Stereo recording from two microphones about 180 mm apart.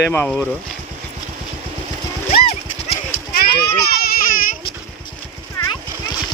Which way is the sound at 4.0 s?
55° left (ahead or behind).